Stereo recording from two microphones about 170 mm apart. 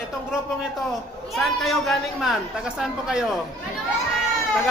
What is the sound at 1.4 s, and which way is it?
A woman's voice, centre (ahead or behind).